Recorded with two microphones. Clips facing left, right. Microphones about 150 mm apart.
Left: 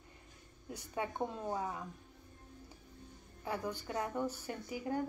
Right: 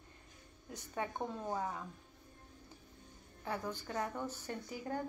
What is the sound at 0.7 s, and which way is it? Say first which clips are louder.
Speech: left 2 dB; 10° left (ahead or behind).